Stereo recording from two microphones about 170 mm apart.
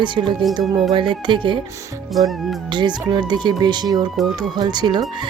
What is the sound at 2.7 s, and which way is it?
Speech, 25° right (ahead or behind).